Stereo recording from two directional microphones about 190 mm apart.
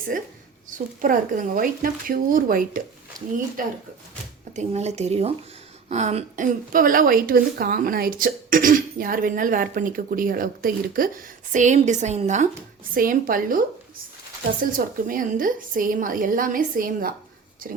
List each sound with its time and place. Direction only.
0.1 s speech: 45° right (ahead or behind)
4.5 s a woman's voice: 35° right (ahead or behind)
14.6 s speech: 45° right (ahead or behind)